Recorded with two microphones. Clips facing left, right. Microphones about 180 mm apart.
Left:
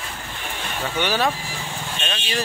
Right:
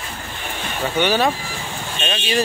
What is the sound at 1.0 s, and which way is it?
Speech, centre (ahead or behind).